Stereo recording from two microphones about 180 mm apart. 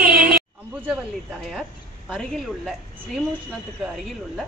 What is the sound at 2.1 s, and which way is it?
Speech, centre (ahead or behind).